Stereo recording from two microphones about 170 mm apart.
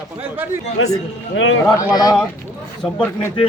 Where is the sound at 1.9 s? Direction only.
20° left (ahead or behind).